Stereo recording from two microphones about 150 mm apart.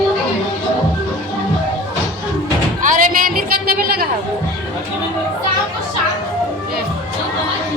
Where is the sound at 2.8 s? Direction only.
65° right (ahead or behind); by 4.0 s 90° right.